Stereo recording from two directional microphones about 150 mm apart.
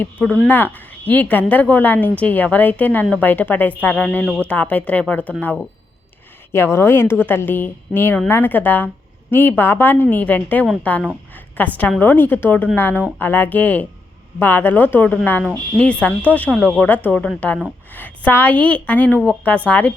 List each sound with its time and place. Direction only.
0.0 s a woman's voice: 10° left (ahead or behind)